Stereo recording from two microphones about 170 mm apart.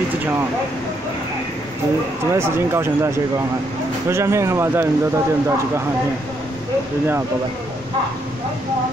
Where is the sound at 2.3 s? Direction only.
15° right (ahead or behind).